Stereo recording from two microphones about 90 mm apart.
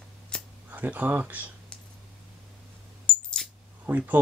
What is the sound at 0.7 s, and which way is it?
Speech, 20° right (ahead or behind).